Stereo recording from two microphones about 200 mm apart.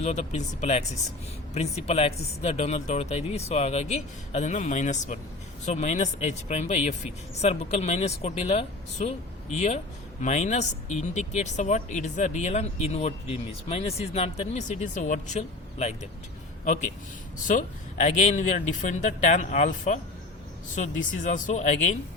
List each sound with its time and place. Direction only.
0.0 s speech: 35° left (ahead or behind)
17.4 s speech: 40° left (ahead or behind)